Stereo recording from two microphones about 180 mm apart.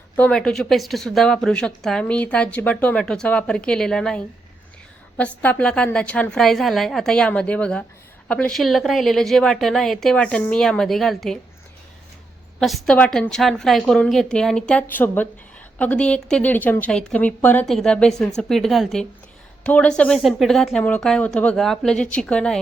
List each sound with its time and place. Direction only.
0.2 s speech: 5° left (ahead or behind)
12.5 s speech: centre (ahead or behind)